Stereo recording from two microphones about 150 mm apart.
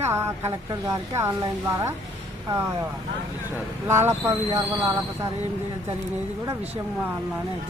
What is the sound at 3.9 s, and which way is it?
Speech, 15° right (ahead or behind).